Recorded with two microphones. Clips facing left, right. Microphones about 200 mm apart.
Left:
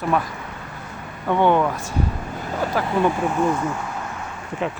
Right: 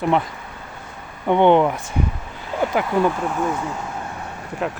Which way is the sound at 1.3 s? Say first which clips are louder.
Right 3 dB; 20° right (ahead or behind).